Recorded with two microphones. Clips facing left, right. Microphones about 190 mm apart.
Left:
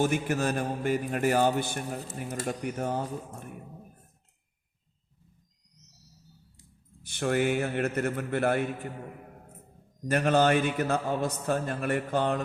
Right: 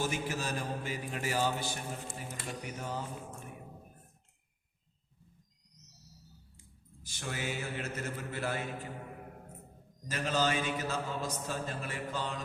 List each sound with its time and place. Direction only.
0.0 s a man's voice: 55° left (ahead or behind)
2.1 s speech: 45° left (ahead or behind)
7.0 s a man's voice: 60° left (ahead or behind)
10.1 s a man's voice: 60° left (ahead or behind)